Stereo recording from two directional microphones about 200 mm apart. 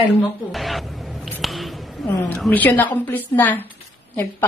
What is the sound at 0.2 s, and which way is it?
Speech, centre (ahead or behind).